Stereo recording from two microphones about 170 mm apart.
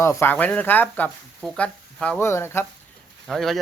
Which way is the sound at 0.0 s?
15° left (ahead or behind).